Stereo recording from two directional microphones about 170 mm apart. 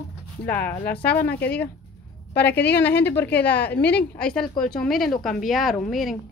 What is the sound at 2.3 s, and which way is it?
Speech, 75° left (ahead or behind).